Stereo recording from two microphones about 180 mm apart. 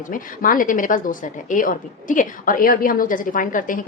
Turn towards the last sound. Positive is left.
turn(degrees=45)  # may be behind; listen again after turning